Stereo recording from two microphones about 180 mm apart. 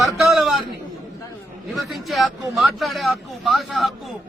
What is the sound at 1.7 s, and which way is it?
A man's voice, centre (ahead or behind).